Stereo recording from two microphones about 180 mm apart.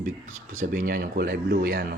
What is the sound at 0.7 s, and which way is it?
Speech, 50° right (ahead or behind).